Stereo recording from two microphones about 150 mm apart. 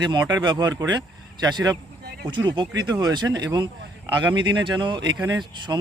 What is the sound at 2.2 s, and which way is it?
Speech, 30° right (ahead or behind).